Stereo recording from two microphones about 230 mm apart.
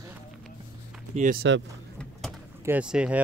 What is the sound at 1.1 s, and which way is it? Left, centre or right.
Speech, right.